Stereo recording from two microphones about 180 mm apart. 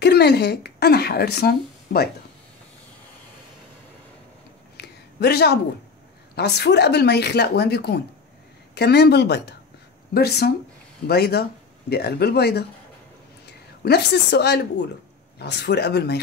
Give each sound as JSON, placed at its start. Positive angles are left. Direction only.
{"t": 0.0, "sound": "speech", "side_deg": 65}
{"t": 4.7, "sound": "a sound", "side_deg": 65}
{"t": 6.3, "sound": "a woman's voice", "side_deg": 65}